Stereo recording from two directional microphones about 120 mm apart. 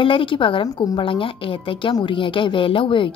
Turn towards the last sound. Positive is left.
turn(degrees=45)  # may be behind; listen again after turning